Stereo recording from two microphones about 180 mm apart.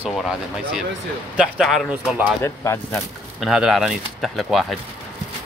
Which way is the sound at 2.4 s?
15° left (ahead or behind).